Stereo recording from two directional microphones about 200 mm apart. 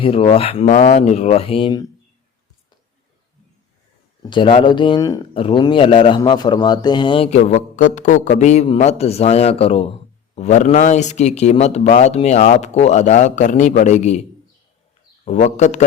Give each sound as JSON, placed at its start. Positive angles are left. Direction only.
{"t": 0.0, "sound": "speech", "side_deg": 30}
{"t": 4.2, "sound": "speech", "side_deg": 25}
{"t": 15.2, "sound": "speech", "side_deg": 35}